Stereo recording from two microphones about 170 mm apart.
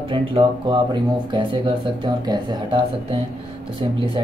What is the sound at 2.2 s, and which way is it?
Speech, 25° right (ahead or behind).